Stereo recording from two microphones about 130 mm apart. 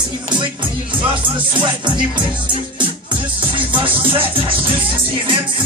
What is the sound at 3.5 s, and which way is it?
Music, 40° right (ahead or behind).